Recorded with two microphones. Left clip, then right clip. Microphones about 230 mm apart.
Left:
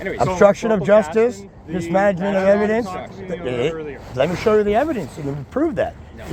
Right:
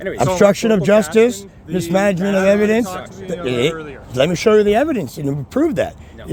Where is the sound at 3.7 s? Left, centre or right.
Right.